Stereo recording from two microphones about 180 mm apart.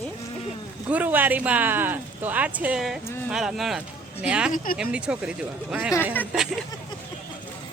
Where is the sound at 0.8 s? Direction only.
10° right (ahead or behind).